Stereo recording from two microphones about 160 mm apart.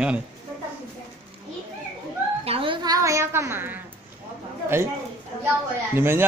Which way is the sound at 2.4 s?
35° right (ahead or behind).